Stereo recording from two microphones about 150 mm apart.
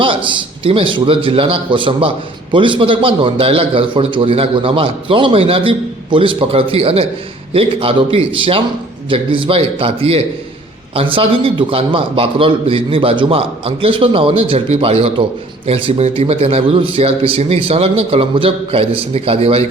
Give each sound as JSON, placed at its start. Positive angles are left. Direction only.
{"t": 0.0, "sound": "a man's voice", "side_deg": -35}